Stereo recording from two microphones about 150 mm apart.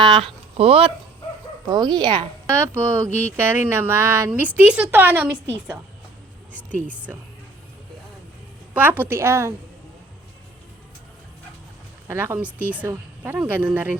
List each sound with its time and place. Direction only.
0.0 s speech: 35° right (ahead or behind)
1.6 s speech: 30° right (ahead or behind)
2.5 s speech: 15° right (ahead or behind)
6.5 s a sound: 10° left (ahead or behind)
6.8 s speech: 10° right (ahead or behind)
8.7 s speech: 10° right (ahead or behind)
12.0 s speech: 15° right (ahead or behind)